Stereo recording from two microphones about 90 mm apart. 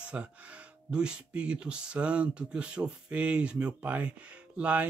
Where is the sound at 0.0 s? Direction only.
15° right (ahead or behind).